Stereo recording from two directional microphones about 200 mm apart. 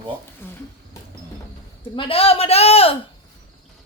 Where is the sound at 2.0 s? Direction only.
30° left (ahead or behind).